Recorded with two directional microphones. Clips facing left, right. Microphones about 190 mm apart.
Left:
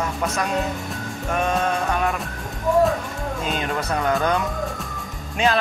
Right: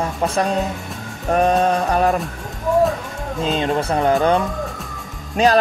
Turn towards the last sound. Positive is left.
turn(degrees=-40)  # may be behind; listen again after turning